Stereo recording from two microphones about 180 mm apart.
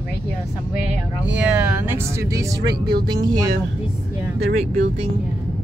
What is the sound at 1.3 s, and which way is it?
Speech, 5° right (ahead or behind).